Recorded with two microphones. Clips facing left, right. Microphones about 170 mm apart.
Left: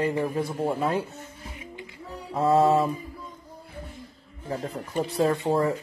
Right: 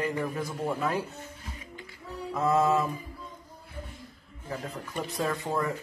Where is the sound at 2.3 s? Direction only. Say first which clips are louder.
Left 4 dB; 30° left (ahead or behind).